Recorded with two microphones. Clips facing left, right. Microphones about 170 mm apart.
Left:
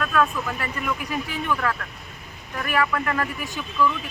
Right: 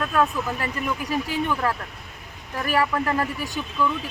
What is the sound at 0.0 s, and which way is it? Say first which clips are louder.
Speech: even; 25° right (ahead or behind).